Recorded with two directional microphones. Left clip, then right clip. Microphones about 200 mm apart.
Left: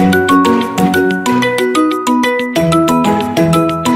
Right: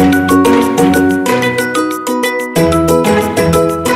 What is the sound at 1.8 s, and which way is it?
Music, centre (ahead or behind).